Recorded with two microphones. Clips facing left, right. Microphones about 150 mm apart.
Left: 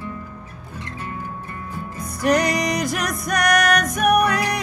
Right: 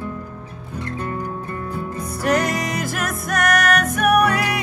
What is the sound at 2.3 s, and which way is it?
Music, 5° right (ahead or behind).